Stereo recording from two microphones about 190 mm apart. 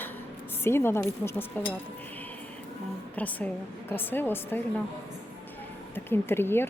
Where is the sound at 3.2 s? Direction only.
10° left (ahead or behind).